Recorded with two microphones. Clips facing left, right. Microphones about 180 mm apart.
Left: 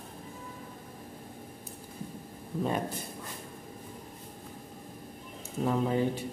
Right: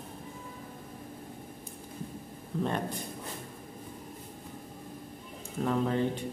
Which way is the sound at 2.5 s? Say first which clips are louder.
Even; 5° left (ahead or behind).